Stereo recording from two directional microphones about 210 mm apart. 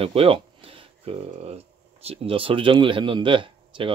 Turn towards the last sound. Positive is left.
turn(degrees=-25)  # may be behind; listen again after turning